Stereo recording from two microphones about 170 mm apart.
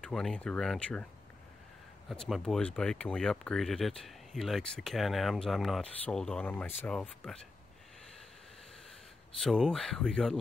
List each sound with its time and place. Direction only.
0.0 s speech: 5° left (ahead or behind)
2.0 s speech: centre (ahead or behind)
9.4 s speech: 5° left (ahead or behind)